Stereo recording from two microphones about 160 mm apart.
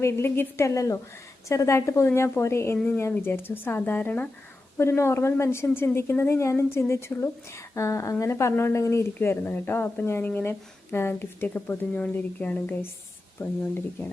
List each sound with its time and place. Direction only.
0.0 s a woman's voice: 15° left (ahead or behind)